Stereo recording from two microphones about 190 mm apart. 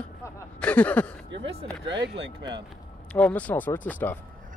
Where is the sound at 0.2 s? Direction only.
5° left (ahead or behind).